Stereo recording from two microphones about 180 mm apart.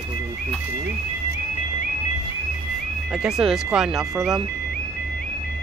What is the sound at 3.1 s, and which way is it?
Speech, 5° right (ahead or behind).